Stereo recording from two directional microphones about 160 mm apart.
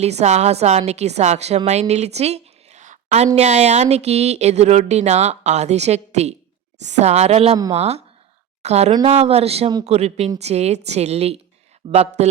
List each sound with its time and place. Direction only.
0.0 s a woman's voice: 45° right (ahead or behind)